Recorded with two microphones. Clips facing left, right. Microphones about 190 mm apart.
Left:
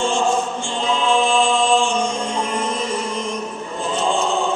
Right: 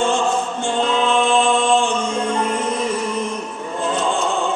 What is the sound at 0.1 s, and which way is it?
Choir, 60° right (ahead or behind).